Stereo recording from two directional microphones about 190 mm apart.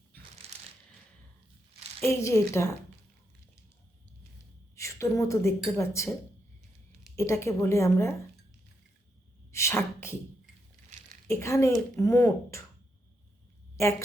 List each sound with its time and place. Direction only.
0.4 s a sound: 35° right (ahead or behind)
2.0 s speech: 15° left (ahead or behind)
4.7 s a woman's voice: 15° left (ahead or behind)
7.2 s speech: 15° left (ahead or behind)
9.5 s sneeze: 15° left (ahead or behind)
11.3 s speech: 15° left (ahead or behind)
13.8 s speech: 15° left (ahead or behind)